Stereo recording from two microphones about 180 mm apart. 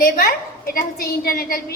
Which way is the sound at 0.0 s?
55° left (ahead or behind).